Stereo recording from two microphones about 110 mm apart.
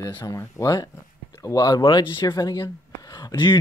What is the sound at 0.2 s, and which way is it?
Speech, 30° left (ahead or behind).